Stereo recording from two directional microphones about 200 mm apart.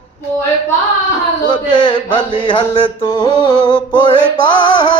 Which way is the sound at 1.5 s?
25° left (ahead or behind).